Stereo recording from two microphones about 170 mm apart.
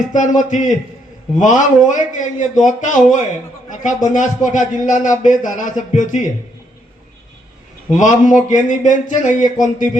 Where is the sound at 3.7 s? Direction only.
45° left (ahead or behind).